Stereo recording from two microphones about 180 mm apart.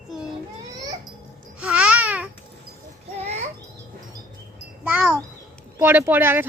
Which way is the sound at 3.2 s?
40° right (ahead or behind).